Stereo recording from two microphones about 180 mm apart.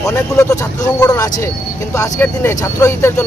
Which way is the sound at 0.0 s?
15° left (ahead or behind).